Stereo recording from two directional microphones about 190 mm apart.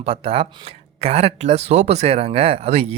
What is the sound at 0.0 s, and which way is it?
Speech, 30° right (ahead or behind).